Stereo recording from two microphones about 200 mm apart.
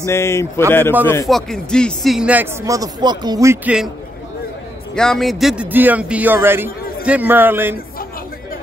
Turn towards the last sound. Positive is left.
turn(degrees=-10)  # may be behind; listen again after turning